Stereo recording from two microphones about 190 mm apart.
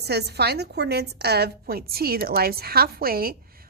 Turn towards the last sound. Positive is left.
turn(degrees=-50)  # may be behind; listen again after turning